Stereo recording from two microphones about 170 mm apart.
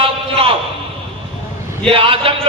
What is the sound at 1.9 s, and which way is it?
Speech, 30° right (ahead or behind).